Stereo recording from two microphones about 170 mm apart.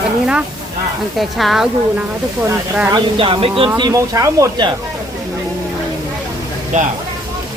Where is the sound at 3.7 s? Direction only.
20° right (ahead or behind).